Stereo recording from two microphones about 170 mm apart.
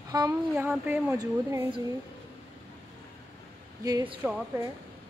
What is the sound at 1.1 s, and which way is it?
Speech, 20° right (ahead or behind).